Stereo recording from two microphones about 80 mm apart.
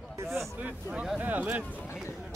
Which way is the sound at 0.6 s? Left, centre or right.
Centre.